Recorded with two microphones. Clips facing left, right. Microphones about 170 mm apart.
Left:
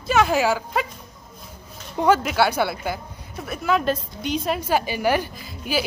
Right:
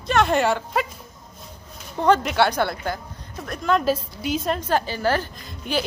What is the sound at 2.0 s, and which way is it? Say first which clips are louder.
A woman's voice: even; 5° left (ahead or behind).